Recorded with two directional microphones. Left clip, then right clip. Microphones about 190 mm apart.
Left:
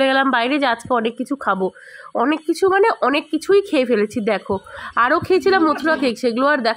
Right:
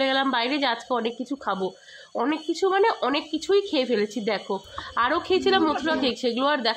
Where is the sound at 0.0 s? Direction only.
20° left (ahead or behind).